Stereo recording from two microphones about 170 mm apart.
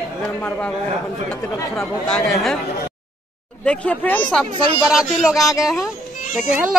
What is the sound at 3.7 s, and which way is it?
Speech, 10° left (ahead or behind).